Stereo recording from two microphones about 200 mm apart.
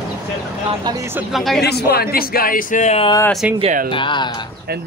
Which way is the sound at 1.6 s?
55° left (ahead or behind).